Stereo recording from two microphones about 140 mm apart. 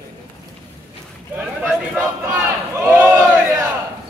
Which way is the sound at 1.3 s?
10° right (ahead or behind).